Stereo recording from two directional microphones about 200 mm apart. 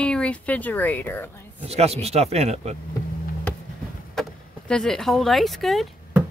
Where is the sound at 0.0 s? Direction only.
5° left (ahead or behind).